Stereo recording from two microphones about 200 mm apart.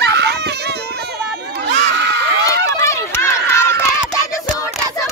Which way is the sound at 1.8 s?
55° right (ahead or behind).